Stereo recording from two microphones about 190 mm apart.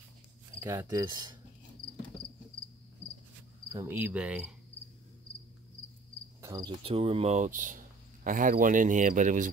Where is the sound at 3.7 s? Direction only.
10° right (ahead or behind).